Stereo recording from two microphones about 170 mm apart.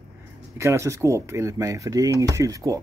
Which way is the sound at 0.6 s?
15° right (ahead or behind).